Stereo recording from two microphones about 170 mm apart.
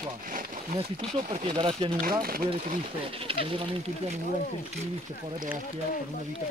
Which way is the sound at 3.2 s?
30° right (ahead or behind).